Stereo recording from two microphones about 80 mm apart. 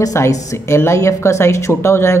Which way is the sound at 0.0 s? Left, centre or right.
Left.